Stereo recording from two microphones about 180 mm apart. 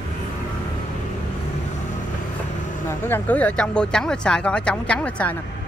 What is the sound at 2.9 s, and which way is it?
Speech, 10° left (ahead or behind).